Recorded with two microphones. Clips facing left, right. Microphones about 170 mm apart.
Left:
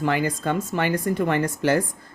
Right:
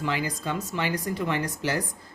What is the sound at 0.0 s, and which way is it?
A woman's voice, 50° left (ahead or behind).